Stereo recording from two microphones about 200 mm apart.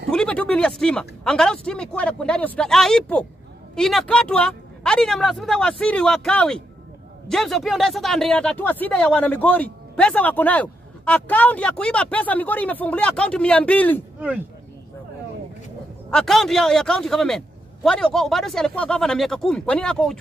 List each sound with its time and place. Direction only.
0.1 s speech: 5° left (ahead or behind)
16.1 s speech: 5° left (ahead or behind)